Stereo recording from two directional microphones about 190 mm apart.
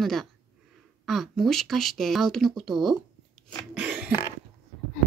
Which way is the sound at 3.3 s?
5° right (ahead or behind).